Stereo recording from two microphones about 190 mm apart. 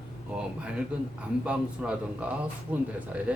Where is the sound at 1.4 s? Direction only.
5° right (ahead or behind).